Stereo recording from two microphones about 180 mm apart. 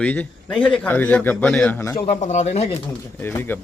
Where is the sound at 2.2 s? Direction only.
40° left (ahead or behind).